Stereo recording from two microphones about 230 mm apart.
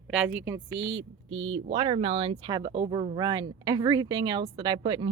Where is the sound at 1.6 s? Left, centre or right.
Right.